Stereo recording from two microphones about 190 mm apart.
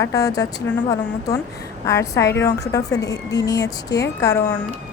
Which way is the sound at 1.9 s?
15° left (ahead or behind).